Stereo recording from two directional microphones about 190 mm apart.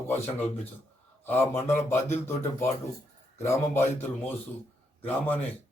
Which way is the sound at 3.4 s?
15° left (ahead or behind).